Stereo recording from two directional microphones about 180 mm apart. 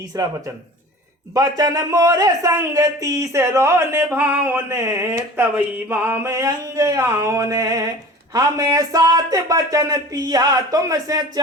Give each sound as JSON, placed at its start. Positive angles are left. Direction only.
{"t": 0.1, "sound": "a man's voice", "side_deg": -20}